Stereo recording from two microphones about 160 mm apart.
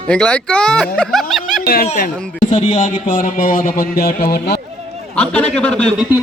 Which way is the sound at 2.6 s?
50° left (ahead or behind).